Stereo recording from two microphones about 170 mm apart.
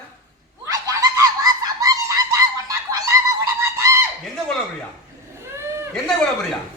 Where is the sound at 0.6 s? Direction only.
20° right (ahead or behind).